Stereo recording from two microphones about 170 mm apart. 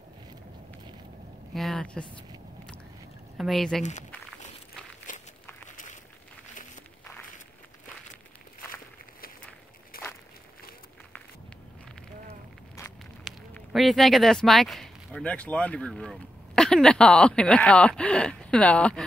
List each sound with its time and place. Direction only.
1.5 s biting: centre (ahead or behind)
3.3 s speech: centre (ahead or behind)
5.1 s walk: 50° left (ahead or behind)
9.9 s walk: 60° left (ahead or behind)
13.2 s speech: centre (ahead or behind)